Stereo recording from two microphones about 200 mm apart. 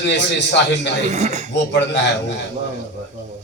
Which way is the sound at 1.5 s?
60° left (ahead or behind).